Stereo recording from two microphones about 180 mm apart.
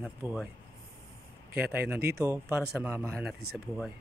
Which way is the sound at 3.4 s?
60° right (ahead or behind).